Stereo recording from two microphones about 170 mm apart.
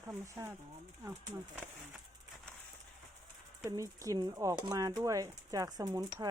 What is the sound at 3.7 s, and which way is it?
Speech, 20° right (ahead or behind).